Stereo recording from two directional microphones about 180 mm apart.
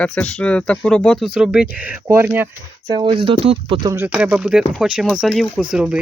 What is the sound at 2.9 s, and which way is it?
Speech, 30° right (ahead or behind).